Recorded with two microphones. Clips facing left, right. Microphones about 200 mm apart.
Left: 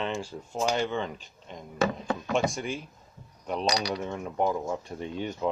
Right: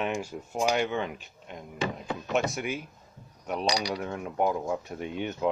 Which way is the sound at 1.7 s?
45° left (ahead or behind).